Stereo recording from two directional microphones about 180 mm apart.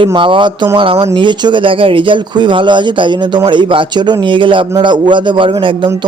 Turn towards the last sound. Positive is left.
turn(degrees=-30)  # may be behind; listen again after turning